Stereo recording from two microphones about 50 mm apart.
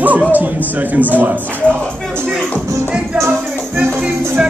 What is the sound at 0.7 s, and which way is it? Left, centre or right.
Speech, right.